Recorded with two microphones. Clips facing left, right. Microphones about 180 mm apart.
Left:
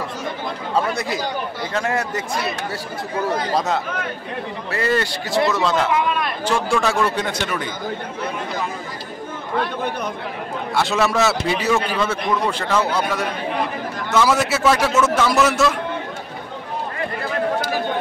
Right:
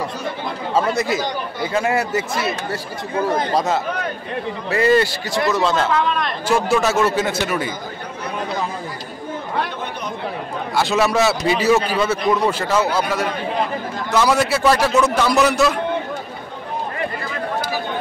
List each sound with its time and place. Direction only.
0.7 s a man's voice: centre (ahead or behind)
4.6 s speech: 15° right (ahead or behind)
5.5 s a man's voice: centre (ahead or behind)
5.9 s speech: 10° left (ahead or behind)
6.4 s a man's voice: 5° right (ahead or behind)
10.7 s a man's voice: centre (ahead or behind)